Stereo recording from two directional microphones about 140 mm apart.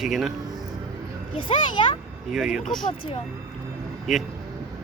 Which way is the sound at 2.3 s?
Centre (ahead or behind).